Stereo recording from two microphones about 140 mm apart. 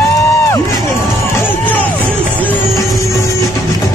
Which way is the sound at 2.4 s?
15° left (ahead or behind).